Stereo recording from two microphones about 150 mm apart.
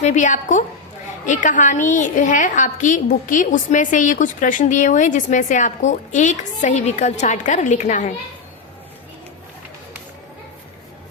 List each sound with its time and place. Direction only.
0.0 s a woman's voice: 55° left (ahead or behind)